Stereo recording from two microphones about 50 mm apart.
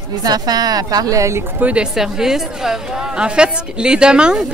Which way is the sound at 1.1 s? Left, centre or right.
Right.